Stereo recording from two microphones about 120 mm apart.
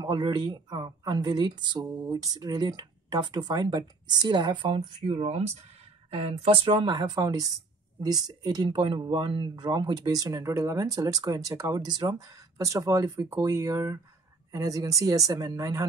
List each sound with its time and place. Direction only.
0.0 s speech: 40° right (ahead or behind)
4.7 s speech: 65° right (ahead or behind)
6.0 s speech: 55° right (ahead or behind); by 15.8 s 30° right (ahead or behind)